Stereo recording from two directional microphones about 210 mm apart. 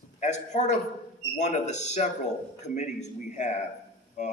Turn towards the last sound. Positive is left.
turn(degrees=35)  # may be behind; listen again after turning